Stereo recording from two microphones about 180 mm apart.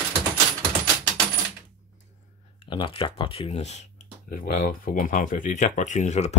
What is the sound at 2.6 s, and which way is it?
Speech, 30° left (ahead or behind).